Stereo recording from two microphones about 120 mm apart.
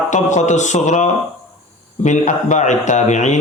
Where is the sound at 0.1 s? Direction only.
85° left.